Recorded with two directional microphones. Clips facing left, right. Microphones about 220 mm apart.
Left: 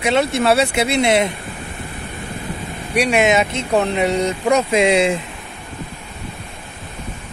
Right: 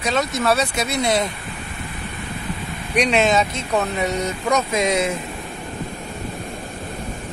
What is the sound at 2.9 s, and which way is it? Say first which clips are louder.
Speech: left 2 dB; 10° left (ahead or behind).